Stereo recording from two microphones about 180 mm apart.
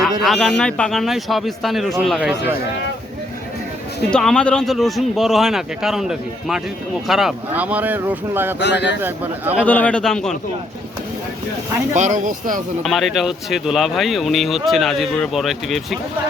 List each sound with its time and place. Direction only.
0.2 s speech: centre (ahead or behind)
4.1 s speech: 5° left (ahead or behind); by 8.5 s 10° right (ahead or behind)
8.5 s speech: 75° left (ahead or behind)
9.0 s speech: 10° right (ahead or behind)
9.6 s speech: 10° left (ahead or behind)
11.9 s speech: 40° right (ahead or behind)
12.8 s speech: centre (ahead or behind)